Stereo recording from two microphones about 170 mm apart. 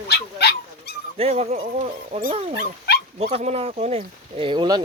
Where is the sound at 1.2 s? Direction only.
40° right (ahead or behind).